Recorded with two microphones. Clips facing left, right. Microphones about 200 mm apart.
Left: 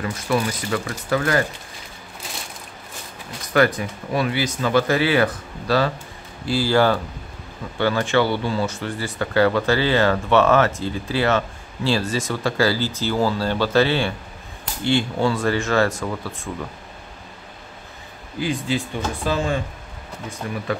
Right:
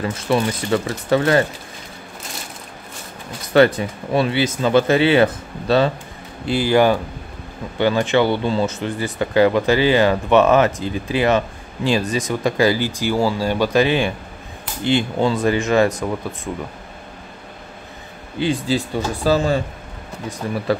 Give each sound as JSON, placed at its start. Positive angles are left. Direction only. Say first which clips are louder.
{"t": 0.0, "sound": "speech", "louder": "right 3 dB", "side_deg": -25}
{"t": 3.5, "sound": "speech", "louder": "right 5 dB", "side_deg": -25}
{"t": 18.4, "sound": "speech", "louder": "right 4 dB", "side_deg": -30}